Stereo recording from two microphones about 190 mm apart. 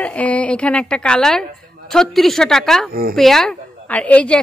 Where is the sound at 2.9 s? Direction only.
50° right (ahead or behind).